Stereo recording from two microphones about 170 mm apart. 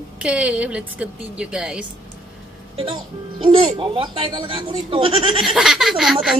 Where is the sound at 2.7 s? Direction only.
30° right (ahead or behind).